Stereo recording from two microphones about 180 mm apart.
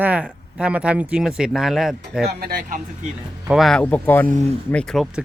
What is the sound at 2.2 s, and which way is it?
Speech, 55° right (ahead or behind).